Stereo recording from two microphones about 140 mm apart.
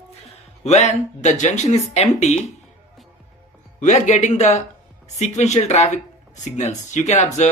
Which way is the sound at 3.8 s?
60° left (ahead or behind).